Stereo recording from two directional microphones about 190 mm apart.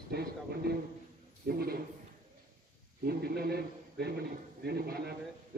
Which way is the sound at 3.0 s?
55° right (ahead or behind).